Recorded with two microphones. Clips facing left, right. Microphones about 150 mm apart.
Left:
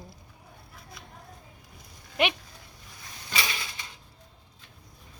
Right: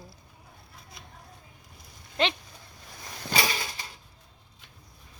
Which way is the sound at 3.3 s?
40° right (ahead or behind).